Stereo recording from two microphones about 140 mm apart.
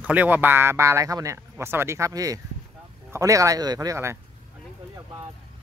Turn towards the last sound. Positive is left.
turn(degrees=-20)  # may be behind; listen again after turning